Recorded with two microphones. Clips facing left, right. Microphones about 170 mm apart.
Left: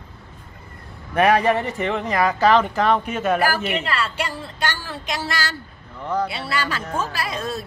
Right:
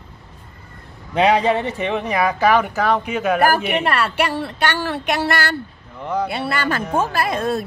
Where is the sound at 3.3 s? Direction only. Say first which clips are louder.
Right 4 dB; 60° right (ahead or behind).